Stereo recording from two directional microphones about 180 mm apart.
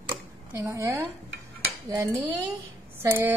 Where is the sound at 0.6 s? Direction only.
15° right (ahead or behind).